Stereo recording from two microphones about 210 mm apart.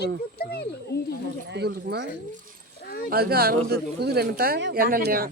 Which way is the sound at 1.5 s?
55° right (ahead or behind).